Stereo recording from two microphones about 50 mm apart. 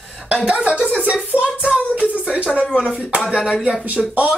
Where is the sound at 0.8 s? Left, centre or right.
Right.